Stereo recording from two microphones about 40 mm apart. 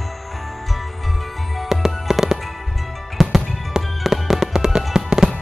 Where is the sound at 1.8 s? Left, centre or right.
Centre.